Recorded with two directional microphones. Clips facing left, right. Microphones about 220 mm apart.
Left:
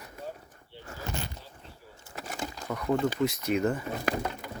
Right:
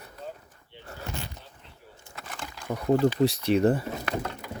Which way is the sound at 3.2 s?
35° right (ahead or behind).